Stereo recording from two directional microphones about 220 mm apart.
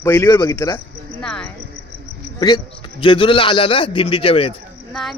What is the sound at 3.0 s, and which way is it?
A man's voice, 25° left (ahead or behind).